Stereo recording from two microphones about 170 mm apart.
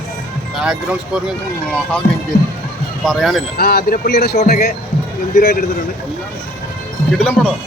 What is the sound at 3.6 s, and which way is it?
Speech, 65° left (ahead or behind).